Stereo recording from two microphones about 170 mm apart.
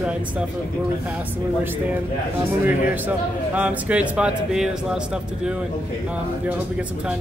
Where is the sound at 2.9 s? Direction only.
10° right (ahead or behind).